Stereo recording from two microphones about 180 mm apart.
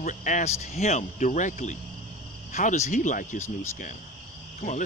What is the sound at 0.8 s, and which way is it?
Cricket, 40° left (ahead or behind).